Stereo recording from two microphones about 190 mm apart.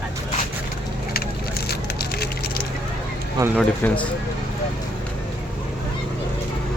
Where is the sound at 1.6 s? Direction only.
55° left (ahead or behind).